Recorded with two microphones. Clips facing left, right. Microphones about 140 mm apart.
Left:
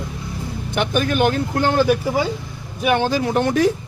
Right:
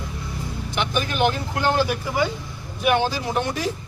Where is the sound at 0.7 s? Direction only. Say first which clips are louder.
Left 6 dB; 55° left (ahead or behind).